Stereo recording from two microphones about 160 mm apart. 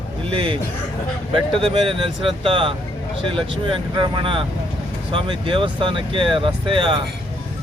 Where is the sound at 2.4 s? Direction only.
30° right (ahead or behind).